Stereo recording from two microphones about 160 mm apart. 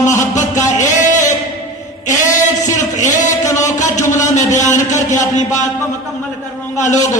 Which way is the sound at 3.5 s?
50° left (ahead or behind).